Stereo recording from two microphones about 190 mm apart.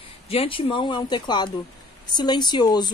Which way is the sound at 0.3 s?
30° left (ahead or behind).